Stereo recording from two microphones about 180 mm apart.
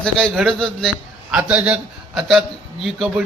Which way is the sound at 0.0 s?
5° left (ahead or behind).